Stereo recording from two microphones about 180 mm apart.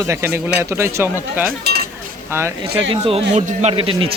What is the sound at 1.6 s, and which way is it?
Cutlery, 60° right (ahead or behind).